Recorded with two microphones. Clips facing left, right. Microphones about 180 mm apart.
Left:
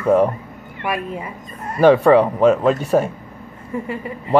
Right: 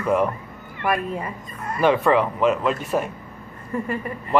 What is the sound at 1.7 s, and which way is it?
A man's voice, 35° left (ahead or behind).